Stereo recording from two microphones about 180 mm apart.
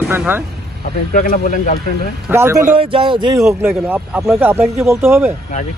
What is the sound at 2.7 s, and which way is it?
Speech, 30° right (ahead or behind).